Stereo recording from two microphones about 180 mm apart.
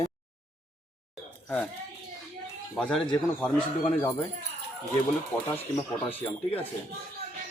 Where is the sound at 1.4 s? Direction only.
10° left (ahead or behind).